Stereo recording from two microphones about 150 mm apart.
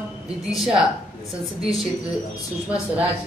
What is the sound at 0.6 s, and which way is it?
Speech, 5° right (ahead or behind).